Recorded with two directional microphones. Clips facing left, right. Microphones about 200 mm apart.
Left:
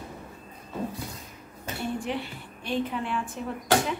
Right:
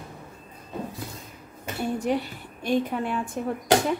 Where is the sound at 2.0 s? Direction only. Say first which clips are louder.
Right 6 dB; 40° right (ahead or behind).